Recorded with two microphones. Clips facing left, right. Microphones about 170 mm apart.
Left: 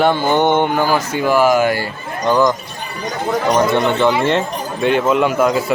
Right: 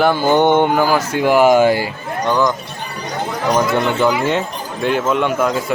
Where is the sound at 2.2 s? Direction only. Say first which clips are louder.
Left 2 dB; centre (ahead or behind).